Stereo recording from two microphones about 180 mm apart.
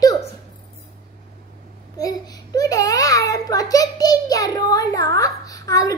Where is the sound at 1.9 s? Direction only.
20° left (ahead or behind).